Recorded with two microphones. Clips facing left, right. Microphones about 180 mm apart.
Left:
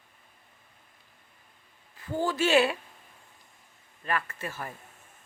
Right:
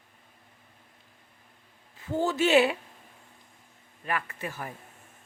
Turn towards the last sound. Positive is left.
turn(degrees=-15)  # may be behind; listen again after turning